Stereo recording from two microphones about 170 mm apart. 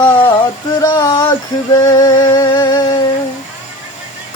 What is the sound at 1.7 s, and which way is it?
Music, 20° left (ahead or behind).